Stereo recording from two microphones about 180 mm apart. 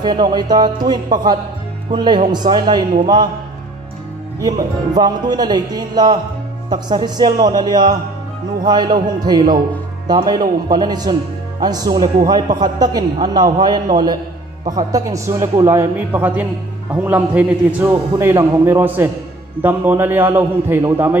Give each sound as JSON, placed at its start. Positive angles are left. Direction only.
{"t": 0.0, "sound": "a woman's voice", "side_deg": -25}
{"t": 4.9, "sound": "a woman's voice", "side_deg": -20}